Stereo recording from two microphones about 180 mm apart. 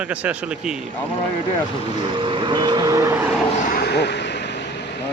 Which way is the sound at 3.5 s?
50° left (ahead or behind).